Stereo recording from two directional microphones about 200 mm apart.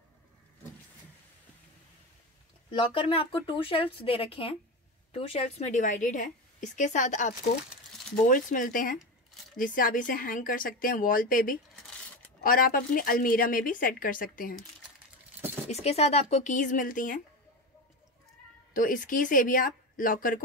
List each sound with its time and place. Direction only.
2.7 s a woman's voice: 25° left (ahead or behind); by 14.5 s 45° left (ahead or behind)
15.7 s a woman's voice: 30° left (ahead or behind)
18.7 s speech: 40° left (ahead or behind)